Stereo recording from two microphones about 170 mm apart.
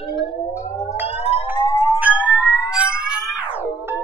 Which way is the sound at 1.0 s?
10° right (ahead or behind).